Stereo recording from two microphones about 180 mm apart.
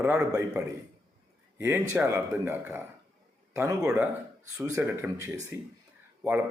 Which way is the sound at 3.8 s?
5° right (ahead or behind).